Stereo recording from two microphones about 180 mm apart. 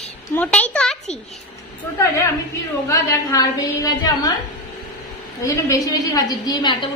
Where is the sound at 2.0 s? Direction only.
15° left (ahead or behind).